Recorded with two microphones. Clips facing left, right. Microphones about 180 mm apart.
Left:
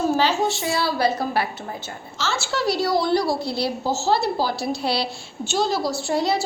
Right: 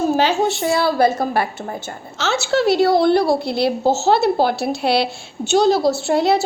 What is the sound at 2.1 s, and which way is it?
A woman's voice, 65° right (ahead or behind).